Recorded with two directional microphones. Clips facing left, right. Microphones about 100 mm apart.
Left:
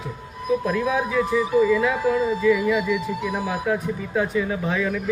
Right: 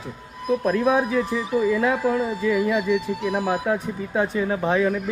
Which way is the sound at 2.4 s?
35° right (ahead or behind).